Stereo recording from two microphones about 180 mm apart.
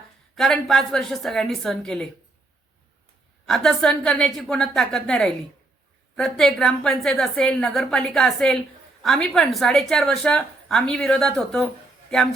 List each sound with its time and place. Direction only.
0.3 s a woman's voice: centre (ahead or behind)
3.4 s a woman's voice: centre (ahead or behind)